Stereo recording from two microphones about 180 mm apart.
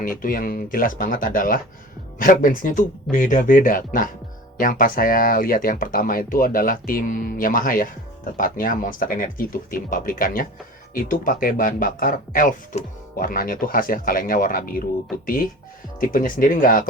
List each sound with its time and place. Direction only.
0.0 s speech: 50° left (ahead or behind)
16.0 s speech: 50° left (ahead or behind)